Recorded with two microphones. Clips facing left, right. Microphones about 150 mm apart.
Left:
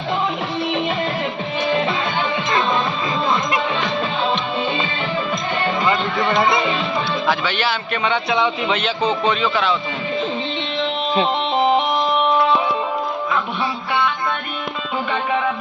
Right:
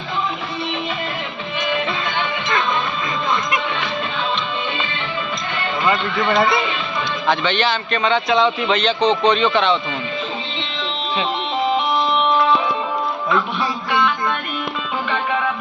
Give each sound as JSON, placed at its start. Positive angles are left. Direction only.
{"t": 6.3, "sound": "speech", "side_deg": 20}
{"t": 7.3, "sound": "a man's voice", "side_deg": 5}